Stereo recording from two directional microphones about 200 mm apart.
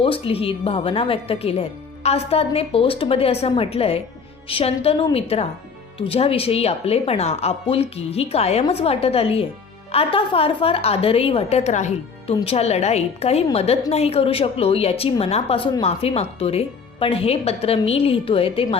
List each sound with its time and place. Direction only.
0.0 s a woman's voice: 25° left (ahead or behind)